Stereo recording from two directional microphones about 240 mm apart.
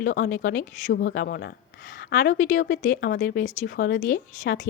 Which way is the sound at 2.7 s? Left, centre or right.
Left.